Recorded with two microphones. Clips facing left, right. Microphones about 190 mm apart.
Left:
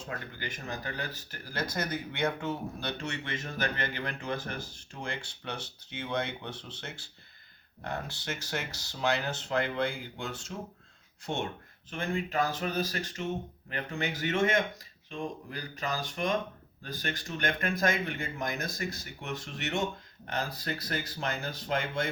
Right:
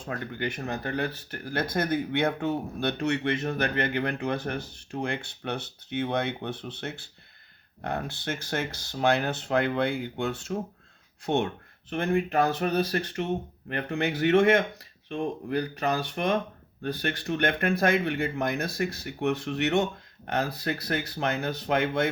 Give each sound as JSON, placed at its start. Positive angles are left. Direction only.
{"t": 0.0, "sound": "speech", "side_deg": -60}